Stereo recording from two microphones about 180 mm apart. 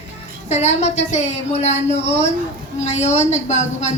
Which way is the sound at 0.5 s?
40° left (ahead or behind).